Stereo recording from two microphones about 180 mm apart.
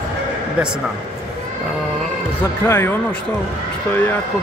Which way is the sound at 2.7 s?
15° left (ahead or behind).